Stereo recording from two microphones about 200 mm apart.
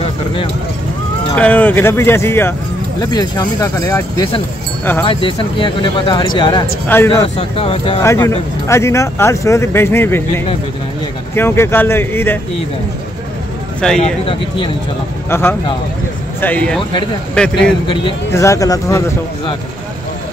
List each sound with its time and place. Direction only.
1.3 s speech: 5° left (ahead or behind); by 8.0 s 30° left (ahead or behind)
8.0 s speech: 15° left (ahead or behind)
13.7 s a man's voice: 5° left (ahead or behind)
14.2 s speech: 25° left (ahead or behind)
15.2 s a man's voice: 10° left (ahead or behind)